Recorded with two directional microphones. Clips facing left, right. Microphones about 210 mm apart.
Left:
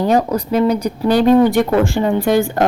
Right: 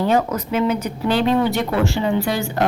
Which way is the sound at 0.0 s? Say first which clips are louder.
Left 3 dB; 40° left (ahead or behind).